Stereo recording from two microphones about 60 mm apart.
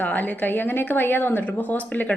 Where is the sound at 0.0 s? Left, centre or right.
Left.